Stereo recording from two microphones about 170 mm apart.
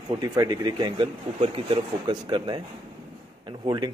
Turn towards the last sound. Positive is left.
turn(degrees=-25)  # may be behind; listen again after turning